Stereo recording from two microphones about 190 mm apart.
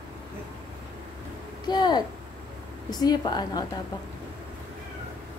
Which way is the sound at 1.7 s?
20° left (ahead or behind).